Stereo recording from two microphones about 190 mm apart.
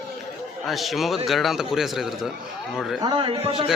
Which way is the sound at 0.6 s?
Centre (ahead or behind).